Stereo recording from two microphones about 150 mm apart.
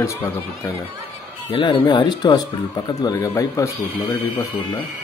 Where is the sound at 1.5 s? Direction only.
35° left (ahead or behind); by 4.4 s 15° left (ahead or behind).